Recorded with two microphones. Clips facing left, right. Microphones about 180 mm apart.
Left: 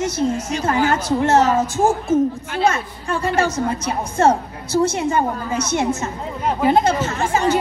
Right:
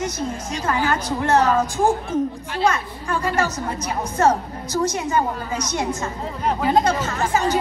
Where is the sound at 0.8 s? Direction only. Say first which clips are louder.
Left 2 dB; 25° left (ahead or behind).